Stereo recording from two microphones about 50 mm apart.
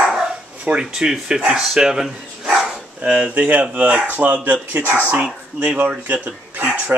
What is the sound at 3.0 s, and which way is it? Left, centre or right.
Speech, right.